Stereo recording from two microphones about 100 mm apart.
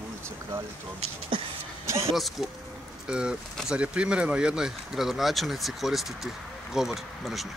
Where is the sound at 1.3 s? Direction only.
60° right (ahead or behind).